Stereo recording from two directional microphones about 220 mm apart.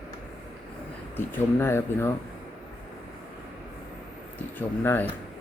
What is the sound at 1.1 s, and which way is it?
Speech, 10° left (ahead or behind).